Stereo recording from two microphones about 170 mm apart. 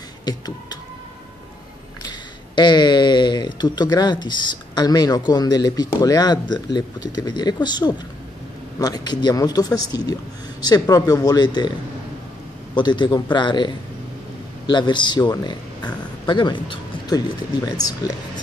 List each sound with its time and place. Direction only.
0.2 s a sound: 25° left (ahead or behind)
2.0 s speech: 25° left (ahead or behind)
12.7 s speech: 25° left (ahead or behind)